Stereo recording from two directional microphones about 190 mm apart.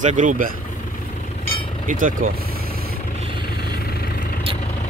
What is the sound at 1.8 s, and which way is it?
Vehicle, 45° right (ahead or behind).